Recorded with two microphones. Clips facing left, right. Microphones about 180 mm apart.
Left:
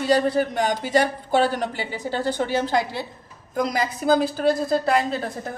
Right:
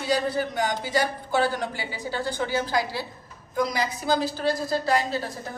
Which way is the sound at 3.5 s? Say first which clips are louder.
Left 2 dB; 50° left (ahead or behind).